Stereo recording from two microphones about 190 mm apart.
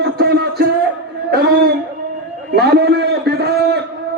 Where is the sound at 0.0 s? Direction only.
55° right (ahead or behind).